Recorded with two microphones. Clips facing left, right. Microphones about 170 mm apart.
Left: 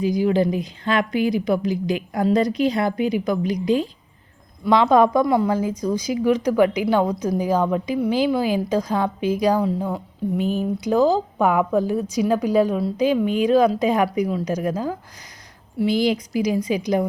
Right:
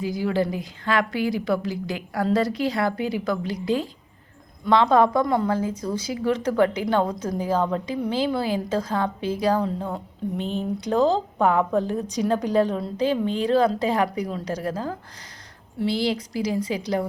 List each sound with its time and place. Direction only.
0.0 s a woman's voice: 20° left (ahead or behind)